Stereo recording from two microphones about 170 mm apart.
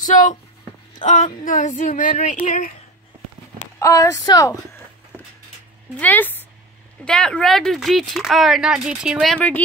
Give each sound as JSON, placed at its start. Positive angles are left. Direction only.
{"t": 0.0, "sound": "speech", "side_deg": 50}
{"t": 3.8, "sound": "a woman's voice", "side_deg": 20}
{"t": 5.9, "sound": "speech", "side_deg": 10}